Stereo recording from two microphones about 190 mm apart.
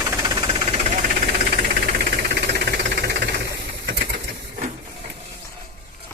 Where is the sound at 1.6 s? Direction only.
50° right (ahead or behind).